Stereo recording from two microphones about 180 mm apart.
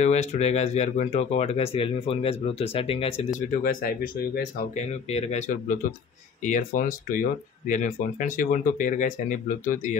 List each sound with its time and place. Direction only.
0.0 s speech: 40° left (ahead or behind); by 4.2 s 55° left (ahead or behind)
4.7 s speech: 35° left (ahead or behind)